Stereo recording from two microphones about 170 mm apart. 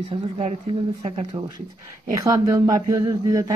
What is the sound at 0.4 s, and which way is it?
Speech, 35° right (ahead or behind).